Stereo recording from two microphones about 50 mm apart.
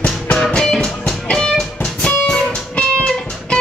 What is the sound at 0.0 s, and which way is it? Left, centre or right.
Music, centre.